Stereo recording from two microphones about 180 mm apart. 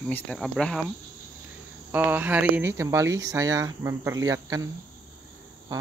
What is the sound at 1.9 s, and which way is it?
Speech, 10° right (ahead or behind).